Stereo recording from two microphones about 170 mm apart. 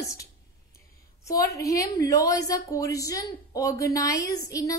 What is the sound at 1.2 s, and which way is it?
A woman's voice, 20° left (ahead or behind).